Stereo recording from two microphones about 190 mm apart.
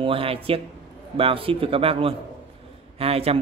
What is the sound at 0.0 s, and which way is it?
A man's voice, 30° right (ahead or behind).